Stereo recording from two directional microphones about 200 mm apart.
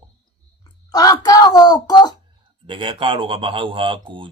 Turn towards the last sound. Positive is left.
turn(degrees=-25)  # may be behind; listen again after turning